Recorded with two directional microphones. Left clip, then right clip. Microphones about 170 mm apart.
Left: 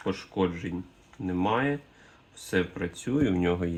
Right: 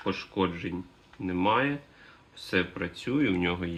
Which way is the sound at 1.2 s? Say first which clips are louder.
Right 1 dB; 45° left (ahead or behind).